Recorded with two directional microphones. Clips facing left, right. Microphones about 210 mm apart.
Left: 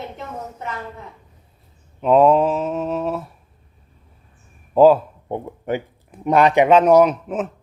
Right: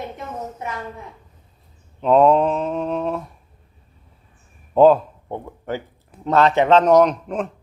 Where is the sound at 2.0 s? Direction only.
5° left (ahead or behind).